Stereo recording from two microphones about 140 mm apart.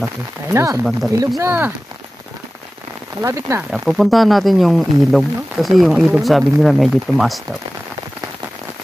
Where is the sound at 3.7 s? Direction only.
Centre (ahead or behind).